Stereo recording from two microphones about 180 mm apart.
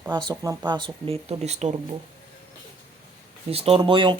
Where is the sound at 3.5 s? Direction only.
35° right (ahead or behind).